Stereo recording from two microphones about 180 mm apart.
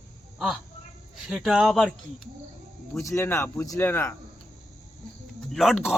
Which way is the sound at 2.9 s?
15° left (ahead or behind).